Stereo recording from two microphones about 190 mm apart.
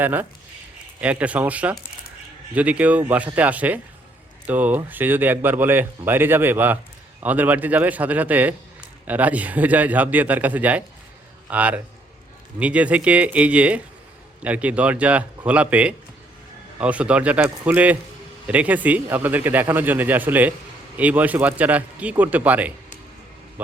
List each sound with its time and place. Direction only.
0.0 s a man's voice: 10° right (ahead or behind)